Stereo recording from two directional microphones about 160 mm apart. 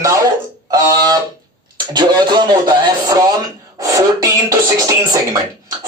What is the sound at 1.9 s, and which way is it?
A woman's voice, 25° right (ahead or behind).